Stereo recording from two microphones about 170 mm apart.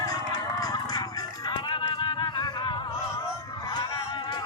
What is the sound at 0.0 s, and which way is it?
Music, 20° left (ahead or behind).